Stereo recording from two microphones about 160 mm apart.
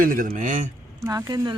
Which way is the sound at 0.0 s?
60° right (ahead or behind).